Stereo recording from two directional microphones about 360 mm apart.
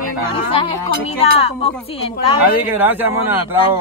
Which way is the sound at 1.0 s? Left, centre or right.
Centre.